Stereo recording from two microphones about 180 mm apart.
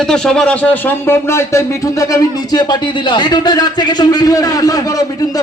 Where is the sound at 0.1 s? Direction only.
5° left (ahead or behind).